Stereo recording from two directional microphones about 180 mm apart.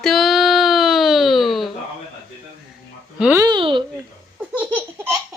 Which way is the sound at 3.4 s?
25° right (ahead or behind).